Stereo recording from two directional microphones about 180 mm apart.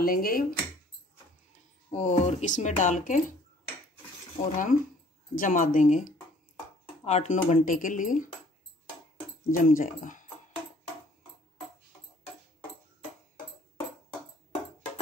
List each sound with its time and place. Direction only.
0.0 s speech: 55° left (ahead or behind)
1.9 s speech: 40° left (ahead or behind)
4.4 s speech: 45° left (ahead or behind)
9.6 s speech: 50° left (ahead or behind)